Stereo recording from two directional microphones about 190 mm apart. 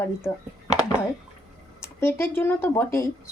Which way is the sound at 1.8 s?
15° left (ahead or behind).